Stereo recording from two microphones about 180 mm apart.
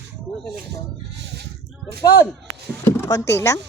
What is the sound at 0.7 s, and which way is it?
Speech, 70° right (ahead or behind).